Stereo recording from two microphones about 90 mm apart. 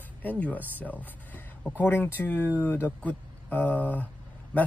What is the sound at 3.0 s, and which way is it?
Speech, 15° left (ahead or behind).